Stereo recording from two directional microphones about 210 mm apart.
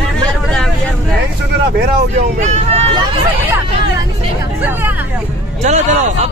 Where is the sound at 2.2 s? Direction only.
30° right (ahead or behind).